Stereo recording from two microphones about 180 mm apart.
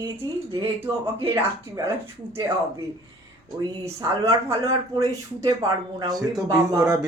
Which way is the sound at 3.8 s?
20° right (ahead or behind).